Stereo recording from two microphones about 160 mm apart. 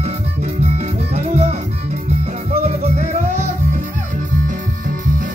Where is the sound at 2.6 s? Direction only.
45° right (ahead or behind).